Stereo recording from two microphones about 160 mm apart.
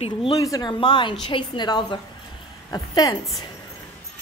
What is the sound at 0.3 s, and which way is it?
A woman's voice, 20° left (ahead or behind).